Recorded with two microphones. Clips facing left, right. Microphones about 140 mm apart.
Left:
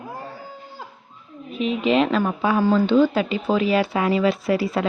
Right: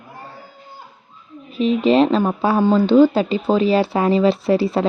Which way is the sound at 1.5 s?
35° right (ahead or behind).